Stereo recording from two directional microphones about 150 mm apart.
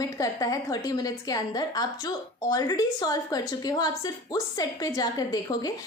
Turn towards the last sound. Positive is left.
turn(degrees=25)  # may be behind; listen again after turning